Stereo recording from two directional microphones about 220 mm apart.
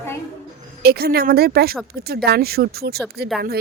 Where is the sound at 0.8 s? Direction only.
45° right (ahead or behind).